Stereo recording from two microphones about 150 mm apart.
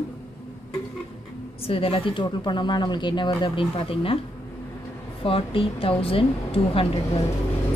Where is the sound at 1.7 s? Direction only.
40° left (ahead or behind).